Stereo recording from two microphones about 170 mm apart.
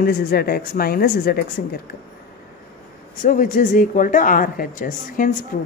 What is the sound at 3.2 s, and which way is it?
A woman's voice, 50° left (ahead or behind).